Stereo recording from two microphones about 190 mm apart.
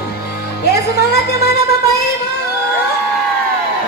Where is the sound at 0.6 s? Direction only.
60° left (ahead or behind).